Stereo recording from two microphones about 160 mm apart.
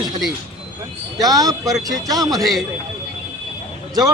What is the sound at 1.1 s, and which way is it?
Speech, 25° right (ahead or behind).